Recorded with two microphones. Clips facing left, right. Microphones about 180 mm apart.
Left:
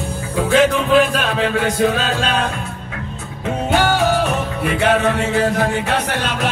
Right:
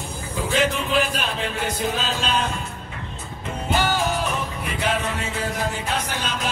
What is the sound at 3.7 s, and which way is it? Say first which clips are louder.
Music: left 6 dB; 70° left (ahead or behind).